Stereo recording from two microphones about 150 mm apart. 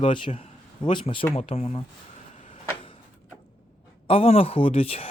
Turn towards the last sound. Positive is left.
turn(degrees=40)  # may be behind; listen again after turning